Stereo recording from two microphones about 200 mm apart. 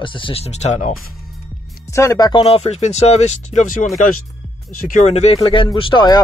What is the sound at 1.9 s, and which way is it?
Speech, 15° left (ahead or behind).